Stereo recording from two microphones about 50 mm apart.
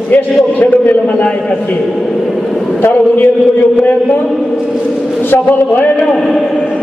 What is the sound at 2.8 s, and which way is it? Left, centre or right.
Speech, left.